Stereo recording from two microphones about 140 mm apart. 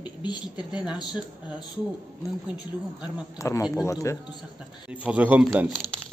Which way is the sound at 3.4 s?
20° left (ahead or behind).